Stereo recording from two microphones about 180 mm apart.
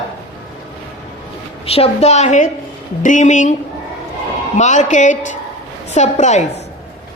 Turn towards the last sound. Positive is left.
turn(degrees=40)  # may be behind; listen again after turning